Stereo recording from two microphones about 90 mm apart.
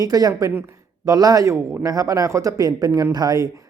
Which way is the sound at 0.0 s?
45° right (ahead or behind).